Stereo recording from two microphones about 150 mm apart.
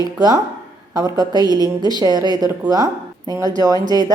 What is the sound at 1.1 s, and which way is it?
Speech, 25° right (ahead or behind).